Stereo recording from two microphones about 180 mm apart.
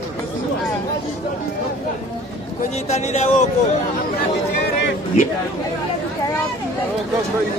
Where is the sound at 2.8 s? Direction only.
35° left (ahead or behind).